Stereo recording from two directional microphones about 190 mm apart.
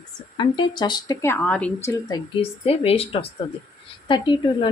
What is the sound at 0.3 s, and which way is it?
A woman's voice, 25° left (ahead or behind).